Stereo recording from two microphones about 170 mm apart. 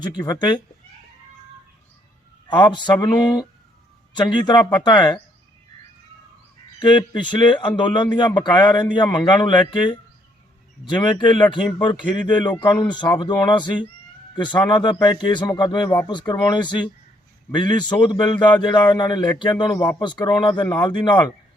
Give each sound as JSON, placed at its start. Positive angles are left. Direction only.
{"t": 0.2, "sound": "a man's voice", "side_deg": 25}
{"t": 2.5, "sound": "a man's voice", "side_deg": 25}
{"t": 6.7, "sound": "a man's voice", "side_deg": 25}